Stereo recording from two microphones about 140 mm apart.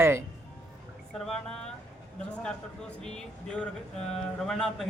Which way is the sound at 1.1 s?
5° left (ahead or behind).